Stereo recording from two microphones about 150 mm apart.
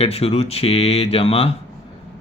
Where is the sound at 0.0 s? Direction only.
40° left (ahead or behind).